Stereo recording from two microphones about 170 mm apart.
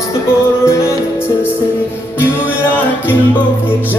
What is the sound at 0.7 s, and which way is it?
Music, 15° left (ahead or behind).